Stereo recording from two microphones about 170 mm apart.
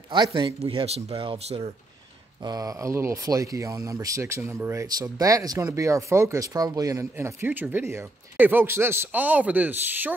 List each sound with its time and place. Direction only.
0.1 s speech: 25° right (ahead or behind)
2.4 s speech: 20° right (ahead or behind)